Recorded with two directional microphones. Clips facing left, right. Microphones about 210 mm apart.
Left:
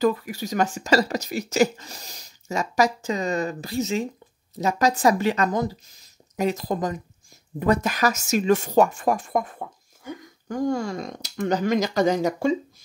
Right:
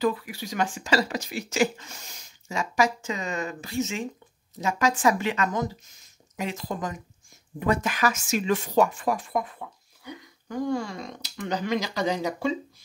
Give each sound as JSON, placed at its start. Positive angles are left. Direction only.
{"t": 0.0, "sound": "speech", "side_deg": 40}